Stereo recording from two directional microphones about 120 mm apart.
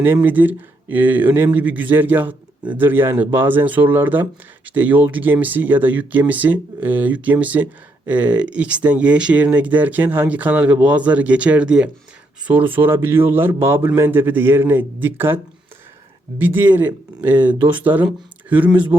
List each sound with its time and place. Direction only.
0.0 s speech: 15° right (ahead or behind)
16.4 s speech: 15° right (ahead or behind)